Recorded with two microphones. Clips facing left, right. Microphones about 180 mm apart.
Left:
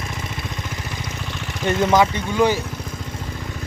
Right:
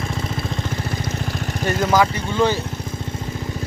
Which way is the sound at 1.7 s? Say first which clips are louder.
Left 1 dB; 20° left (ahead or behind).